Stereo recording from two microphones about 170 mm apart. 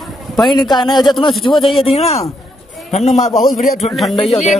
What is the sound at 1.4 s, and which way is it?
Speech, 30° left (ahead or behind).